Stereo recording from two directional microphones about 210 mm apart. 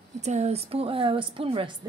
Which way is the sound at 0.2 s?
30° right (ahead or behind).